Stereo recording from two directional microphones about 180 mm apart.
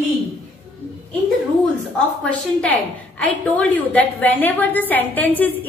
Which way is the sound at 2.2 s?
5° left (ahead or behind).